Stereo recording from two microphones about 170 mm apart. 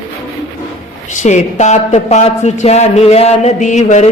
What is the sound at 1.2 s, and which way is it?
Speech, 45° left (ahead or behind).